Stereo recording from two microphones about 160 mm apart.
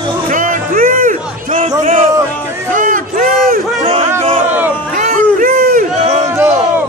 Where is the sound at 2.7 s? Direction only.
55° right (ahead or behind).